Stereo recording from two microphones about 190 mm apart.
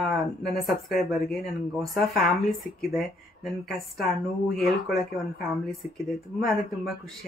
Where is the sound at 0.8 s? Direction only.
Centre (ahead or behind).